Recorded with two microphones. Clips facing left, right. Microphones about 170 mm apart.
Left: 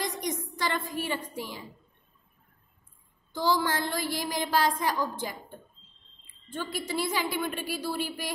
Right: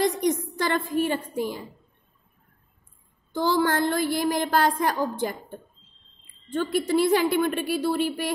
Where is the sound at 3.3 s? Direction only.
55° right (ahead or behind).